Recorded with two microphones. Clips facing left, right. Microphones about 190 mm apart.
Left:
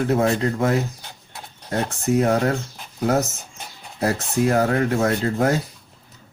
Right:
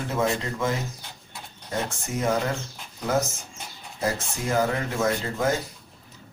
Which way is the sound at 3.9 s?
65° left (ahead or behind).